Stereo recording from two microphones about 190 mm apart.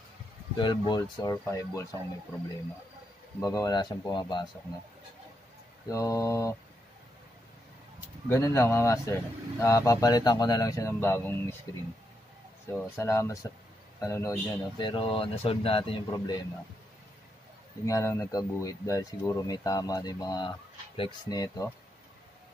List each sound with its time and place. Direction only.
0.6 s speech: 25° left (ahead or behind)
3.4 s speech: 20° left (ahead or behind)
5.9 s speech: 15° left (ahead or behind)
8.3 s speech: 15° left (ahead or behind)
12.7 s speech: 15° left (ahead or behind)
17.8 s speech: 15° left (ahead or behind)